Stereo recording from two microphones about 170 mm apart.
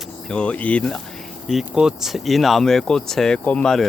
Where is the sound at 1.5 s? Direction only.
5° right (ahead or behind).